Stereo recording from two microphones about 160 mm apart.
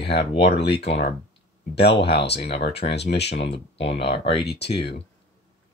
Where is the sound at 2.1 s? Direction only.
90° left.